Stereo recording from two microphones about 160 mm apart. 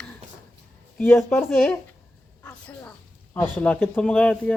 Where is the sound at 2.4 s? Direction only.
10° left (ahead or behind).